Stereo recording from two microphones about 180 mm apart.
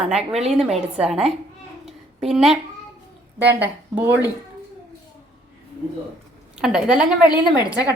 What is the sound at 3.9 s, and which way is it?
Speech, 10° right (ahead or behind).